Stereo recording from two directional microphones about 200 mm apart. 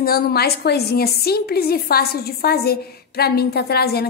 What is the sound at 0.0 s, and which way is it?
A woman's voice, 50° left (ahead or behind).